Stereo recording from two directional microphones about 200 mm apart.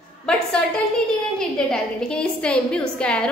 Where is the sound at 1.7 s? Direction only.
5° left (ahead or behind).